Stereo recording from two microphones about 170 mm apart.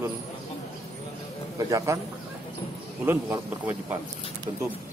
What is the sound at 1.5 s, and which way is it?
Speech, 20° right (ahead or behind).